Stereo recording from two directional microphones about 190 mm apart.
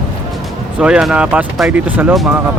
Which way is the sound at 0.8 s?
5° right (ahead or behind).